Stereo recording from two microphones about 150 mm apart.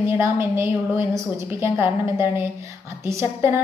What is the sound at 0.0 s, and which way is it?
A woman's voice, 15° right (ahead or behind).